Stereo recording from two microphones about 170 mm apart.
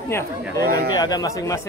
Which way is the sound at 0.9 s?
25° left (ahead or behind).